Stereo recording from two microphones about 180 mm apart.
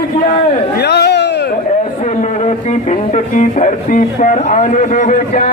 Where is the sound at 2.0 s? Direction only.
40° left (ahead or behind).